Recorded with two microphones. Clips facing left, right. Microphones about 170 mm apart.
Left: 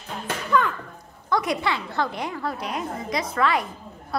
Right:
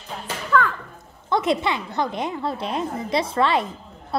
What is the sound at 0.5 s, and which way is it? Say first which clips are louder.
Children playing: right 2 dB; 20° left (ahead or behind).